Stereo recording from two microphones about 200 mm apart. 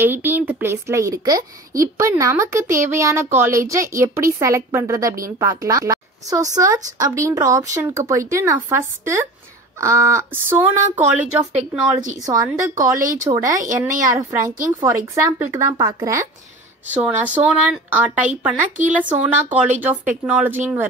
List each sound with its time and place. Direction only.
0.0 s a woman's voice: 10° right (ahead or behind)
12.2 s a woman's voice: 15° right (ahead or behind)